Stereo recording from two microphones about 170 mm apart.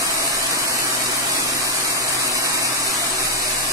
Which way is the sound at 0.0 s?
20° right (ahead or behind).